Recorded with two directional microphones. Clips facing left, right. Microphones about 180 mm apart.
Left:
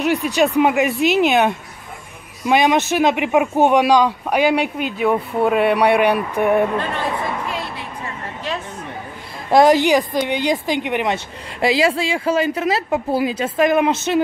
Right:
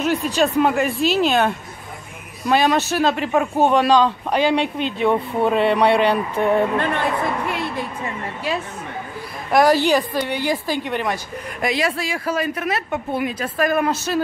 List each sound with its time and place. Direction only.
0.0 s speech: 15° left (ahead or behind)
9.5 s speech: 20° left (ahead or behind)